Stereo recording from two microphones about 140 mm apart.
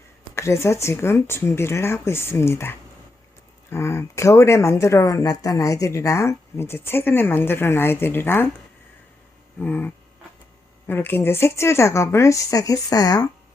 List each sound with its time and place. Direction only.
0.3 s speech: 20° left (ahead or behind)
9.6 s a sound: 10° left (ahead or behind)
10.8 s speech: 15° left (ahead or behind)